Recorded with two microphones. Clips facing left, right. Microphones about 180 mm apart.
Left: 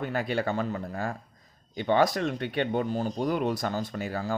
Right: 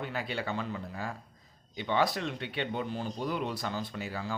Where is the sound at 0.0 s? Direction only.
50° left (ahead or behind).